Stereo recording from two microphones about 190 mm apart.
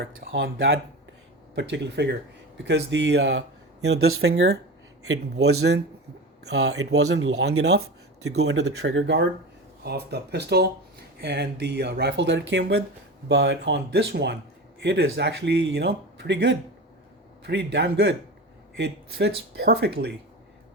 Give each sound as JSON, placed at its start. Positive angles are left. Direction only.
{"t": 0.0, "sound": "speech", "side_deg": -65}